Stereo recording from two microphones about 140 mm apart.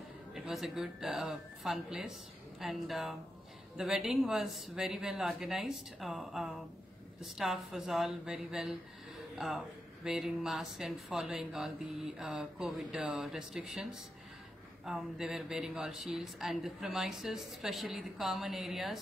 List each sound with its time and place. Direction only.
0.3 s speech: centre (ahead or behind)
14.9 s speech: 5° right (ahead or behind)